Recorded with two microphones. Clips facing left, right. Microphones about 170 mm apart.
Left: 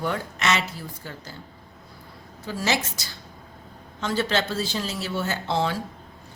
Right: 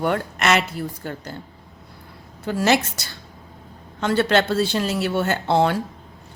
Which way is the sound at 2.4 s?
60° right (ahead or behind).